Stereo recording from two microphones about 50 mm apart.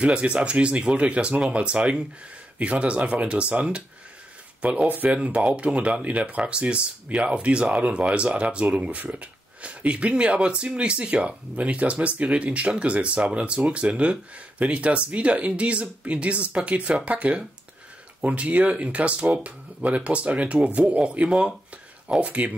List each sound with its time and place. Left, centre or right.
0.0 s speech: right